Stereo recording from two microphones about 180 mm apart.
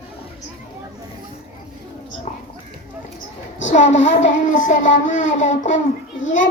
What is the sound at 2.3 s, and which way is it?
Clip-clop, 40° left (ahead or behind).